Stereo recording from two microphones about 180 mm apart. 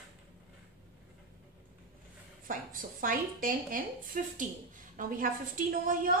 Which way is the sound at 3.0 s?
50° right (ahead or behind).